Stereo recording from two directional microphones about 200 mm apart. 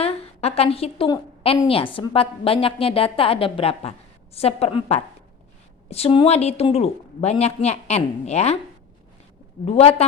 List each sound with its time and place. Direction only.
0.0 s a woman's voice: 30° left (ahead or behind)
9.6 s a woman's voice: 30° left (ahead or behind)